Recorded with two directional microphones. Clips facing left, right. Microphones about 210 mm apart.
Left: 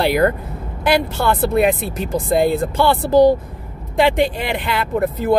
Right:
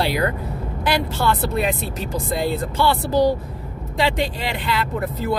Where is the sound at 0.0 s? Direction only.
55° left (ahead or behind).